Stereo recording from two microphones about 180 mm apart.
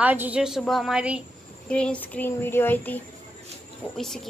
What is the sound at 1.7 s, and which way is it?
A child's voice, 5° left (ahead or behind).